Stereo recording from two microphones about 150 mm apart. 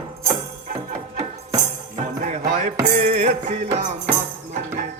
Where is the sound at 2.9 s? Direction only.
45° right (ahead or behind).